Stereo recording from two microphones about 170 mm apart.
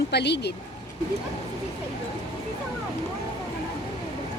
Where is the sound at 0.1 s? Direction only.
80° left.